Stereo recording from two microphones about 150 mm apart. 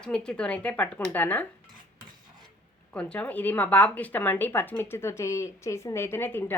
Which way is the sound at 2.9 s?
10° left (ahead or behind).